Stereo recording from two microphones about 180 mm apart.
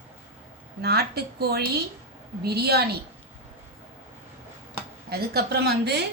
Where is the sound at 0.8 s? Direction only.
65° right (ahead or behind).